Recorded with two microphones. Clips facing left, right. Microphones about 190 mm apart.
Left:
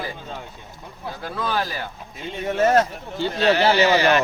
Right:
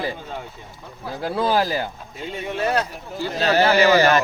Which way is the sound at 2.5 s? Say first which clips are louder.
Left 5 dB; 45° left (ahead or behind).